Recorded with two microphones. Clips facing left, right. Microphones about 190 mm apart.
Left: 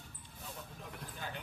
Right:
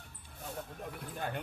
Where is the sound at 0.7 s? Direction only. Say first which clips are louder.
Right 6 dB; 55° right (ahead or behind).